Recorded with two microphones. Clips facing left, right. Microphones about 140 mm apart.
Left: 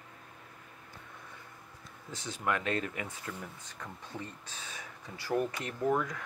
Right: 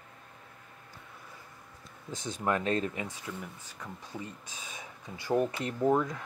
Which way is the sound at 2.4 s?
30° right (ahead or behind).